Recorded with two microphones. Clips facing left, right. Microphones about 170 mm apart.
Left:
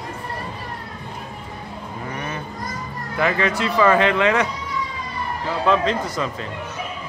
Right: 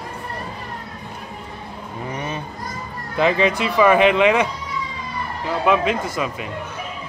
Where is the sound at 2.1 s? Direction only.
20° right (ahead or behind).